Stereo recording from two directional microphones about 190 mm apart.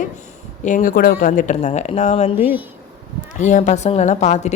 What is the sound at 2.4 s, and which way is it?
Speech, 10° right (ahead or behind).